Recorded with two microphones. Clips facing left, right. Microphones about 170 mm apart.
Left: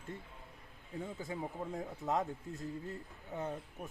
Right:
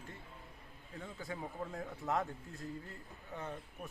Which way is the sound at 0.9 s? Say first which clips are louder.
Left 4 dB; 20° left (ahead or behind).